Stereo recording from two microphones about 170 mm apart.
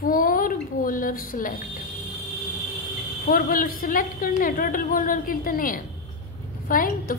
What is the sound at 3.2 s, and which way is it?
A woman's voice, 60° left (ahead or behind).